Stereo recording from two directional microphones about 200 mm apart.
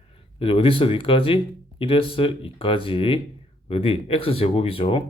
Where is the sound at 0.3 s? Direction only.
30° left (ahead or behind).